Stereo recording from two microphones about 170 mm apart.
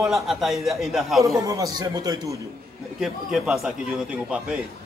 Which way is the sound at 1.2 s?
20° right (ahead or behind).